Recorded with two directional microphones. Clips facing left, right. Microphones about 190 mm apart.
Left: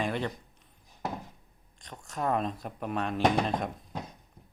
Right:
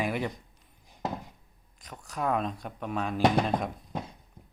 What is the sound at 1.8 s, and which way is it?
Speech, 5° right (ahead or behind).